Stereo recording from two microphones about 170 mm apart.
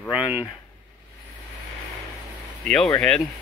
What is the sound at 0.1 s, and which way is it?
Speech, 10° right (ahead or behind).